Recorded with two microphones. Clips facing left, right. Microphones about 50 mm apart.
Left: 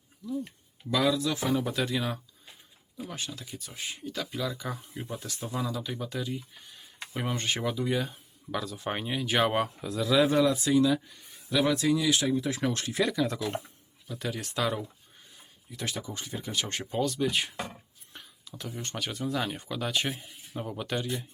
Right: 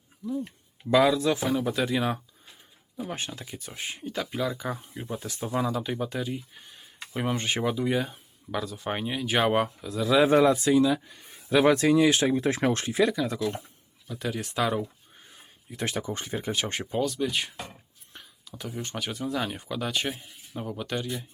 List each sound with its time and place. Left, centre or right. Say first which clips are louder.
0.2 s speech: right 3 dB; centre
0.9 s speech: right 5 dB; right
1.4 s speech: right 2 dB; centre
2.0 s speech: right 5 dB; right
3.0 s speech: right 4 dB; right; by 4.9 s centre
4.9 s speech: right 3 dB; centre
5.2 s speech: right 6 dB; right; by 10.1 s centre
10.2 s speech: right 4 dB; right
10.7 s speech: right 2 dB; centre
11.5 s speech: right 5 dB; right
12.8 s speech: right 4 dB; centre
13.1 s speech: right 1 dB; centre
15.7 s speech: right 5 dB; right
16.8 s speech: even; centre